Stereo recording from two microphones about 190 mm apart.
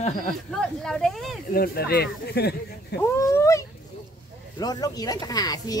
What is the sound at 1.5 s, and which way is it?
Speech, 55° left (ahead or behind).